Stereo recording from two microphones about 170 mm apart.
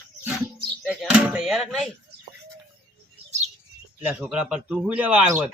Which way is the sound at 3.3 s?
40° right (ahead or behind).